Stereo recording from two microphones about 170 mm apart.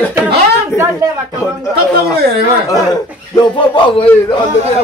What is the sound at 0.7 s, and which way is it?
Speech, 20° right (ahead or behind).